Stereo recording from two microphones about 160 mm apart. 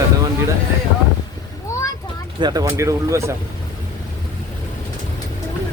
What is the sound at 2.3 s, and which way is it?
Speech, 25° right (ahead or behind).